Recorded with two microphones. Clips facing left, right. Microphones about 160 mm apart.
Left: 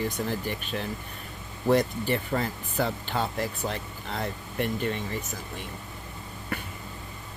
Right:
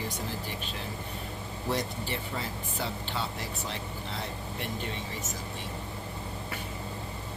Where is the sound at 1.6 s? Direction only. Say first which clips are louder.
Left 9 dB; 55° left (ahead or behind).